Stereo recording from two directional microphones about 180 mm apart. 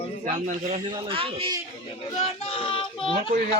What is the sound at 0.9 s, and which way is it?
Speech, 30° right (ahead or behind).